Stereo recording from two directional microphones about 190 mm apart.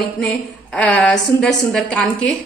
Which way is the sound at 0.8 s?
5° left (ahead or behind).